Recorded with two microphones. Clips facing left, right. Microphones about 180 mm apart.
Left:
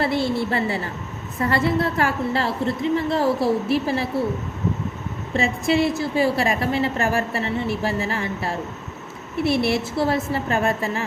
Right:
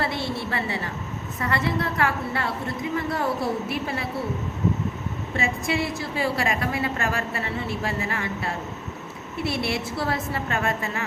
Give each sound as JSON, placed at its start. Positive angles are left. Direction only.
{"t": 0.0, "sound": "a sound", "side_deg": 30}
{"t": 1.4, "sound": "a woman's voice", "side_deg": 30}
{"t": 5.3, "sound": "a woman's voice", "side_deg": 25}
{"t": 9.5, "sound": "a woman's voice", "side_deg": 25}